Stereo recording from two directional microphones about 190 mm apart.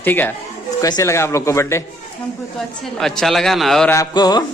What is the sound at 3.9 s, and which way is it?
Music, 20° left (ahead or behind).